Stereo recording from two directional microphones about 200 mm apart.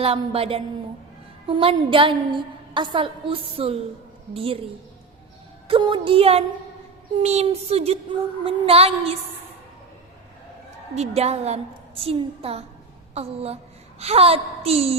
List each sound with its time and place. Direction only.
0.0 s a woman's voice: 30° right (ahead or behind)
5.6 s a woman's voice: 25° right (ahead or behind)
10.9 s a woman's voice: 30° right (ahead or behind)